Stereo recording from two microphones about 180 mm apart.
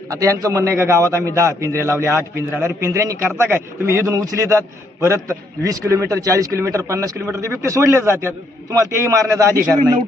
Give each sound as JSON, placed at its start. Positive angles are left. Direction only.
{"t": 0.1, "sound": "a man's voice", "side_deg": -20}